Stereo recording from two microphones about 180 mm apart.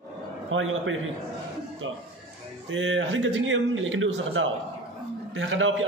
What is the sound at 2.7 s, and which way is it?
A man's voice, 90° right.